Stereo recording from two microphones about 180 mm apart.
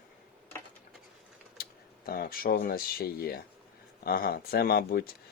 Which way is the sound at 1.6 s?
55° left (ahead or behind).